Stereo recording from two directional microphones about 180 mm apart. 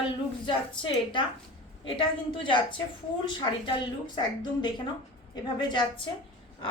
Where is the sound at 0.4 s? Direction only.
25° left (ahead or behind).